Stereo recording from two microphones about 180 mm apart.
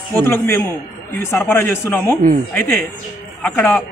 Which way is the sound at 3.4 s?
5° left (ahead or behind).